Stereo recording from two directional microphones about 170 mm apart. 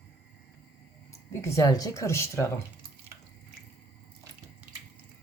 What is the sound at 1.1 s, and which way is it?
Speech, 15° left (ahead or behind).